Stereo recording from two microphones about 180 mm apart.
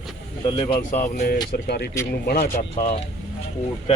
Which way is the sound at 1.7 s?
60° left (ahead or behind).